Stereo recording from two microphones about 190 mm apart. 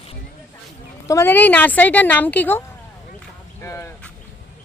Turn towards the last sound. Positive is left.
turn(degrees=15)  # may be behind; listen again after turning